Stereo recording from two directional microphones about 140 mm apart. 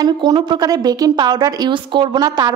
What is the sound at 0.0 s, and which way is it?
A woman's voice, 30° right (ahead or behind).